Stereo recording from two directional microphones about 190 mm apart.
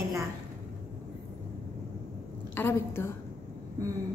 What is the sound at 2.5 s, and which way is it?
Speech, 10° left (ahead or behind).